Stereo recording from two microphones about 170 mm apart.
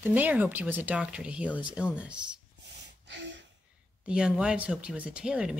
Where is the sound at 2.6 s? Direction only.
90° right.